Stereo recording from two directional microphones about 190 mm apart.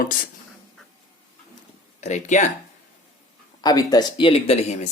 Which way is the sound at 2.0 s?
40° left (ahead or behind).